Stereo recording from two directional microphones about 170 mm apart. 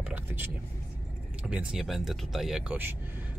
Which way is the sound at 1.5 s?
5° right (ahead or behind).